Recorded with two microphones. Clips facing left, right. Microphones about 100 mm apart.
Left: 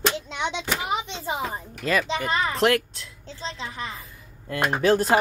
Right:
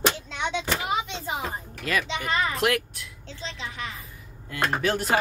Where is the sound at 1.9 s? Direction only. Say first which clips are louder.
Left 3 dB; 35° left (ahead or behind).